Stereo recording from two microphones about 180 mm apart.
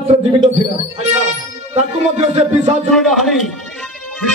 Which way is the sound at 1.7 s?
40° right (ahead or behind).